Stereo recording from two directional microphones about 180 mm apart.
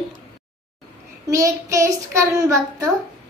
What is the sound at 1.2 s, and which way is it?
A child's voice, 20° right (ahead or behind).